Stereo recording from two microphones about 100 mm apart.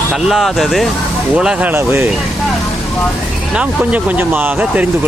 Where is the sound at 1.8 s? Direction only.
25° right (ahead or behind).